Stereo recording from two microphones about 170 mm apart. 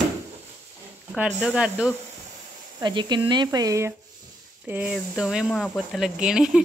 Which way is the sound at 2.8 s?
25° right (ahead or behind).